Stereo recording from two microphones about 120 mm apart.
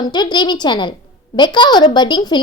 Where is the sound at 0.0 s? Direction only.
35° left (ahead or behind).